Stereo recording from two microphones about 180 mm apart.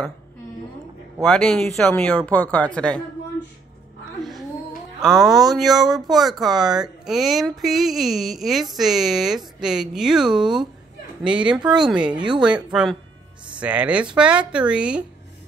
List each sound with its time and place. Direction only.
1.2 s speech: 5° left (ahead or behind)
5.0 s speech: centre (ahead or behind)
12.2 s speech: 25° right (ahead or behind)
12.4 s speech: 5° right (ahead or behind)